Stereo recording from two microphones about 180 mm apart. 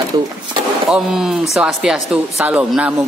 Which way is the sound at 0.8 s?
5° right (ahead or behind).